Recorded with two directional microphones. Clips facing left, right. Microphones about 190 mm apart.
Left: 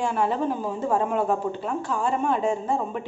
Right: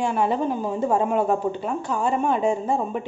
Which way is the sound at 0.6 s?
15° right (ahead or behind).